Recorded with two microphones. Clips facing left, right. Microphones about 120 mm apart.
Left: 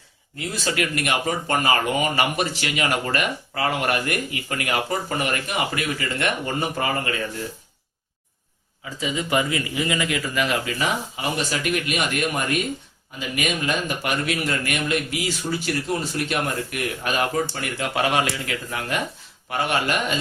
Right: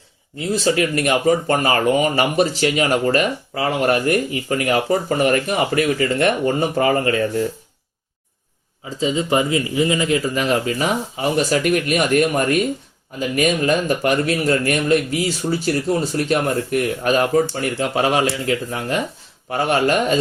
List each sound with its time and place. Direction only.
0.3 s speech: 30° right (ahead or behind)
9.0 s speech: 30° right (ahead or behind)